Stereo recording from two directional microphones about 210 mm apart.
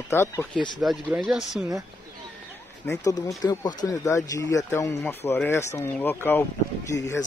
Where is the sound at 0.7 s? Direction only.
5° right (ahead or behind).